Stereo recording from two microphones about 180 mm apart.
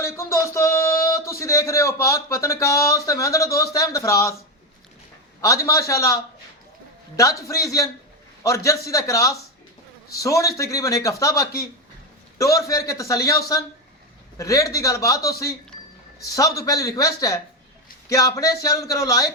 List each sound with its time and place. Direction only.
0.0 s speech: 15° left (ahead or behind)
5.4 s a man's voice: 15° left (ahead or behind)
7.2 s a man's voice: 20° left (ahead or behind)